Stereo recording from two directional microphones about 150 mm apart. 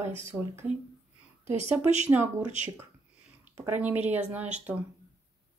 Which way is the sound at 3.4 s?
10° right (ahead or behind).